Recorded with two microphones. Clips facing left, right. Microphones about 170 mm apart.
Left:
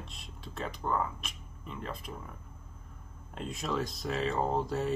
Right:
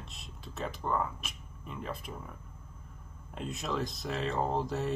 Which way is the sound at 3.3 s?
Centre (ahead or behind).